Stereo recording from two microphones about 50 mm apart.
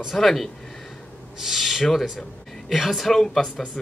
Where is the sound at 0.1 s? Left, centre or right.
Centre.